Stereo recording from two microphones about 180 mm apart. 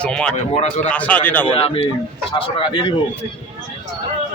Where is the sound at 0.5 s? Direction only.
40° left (ahead or behind).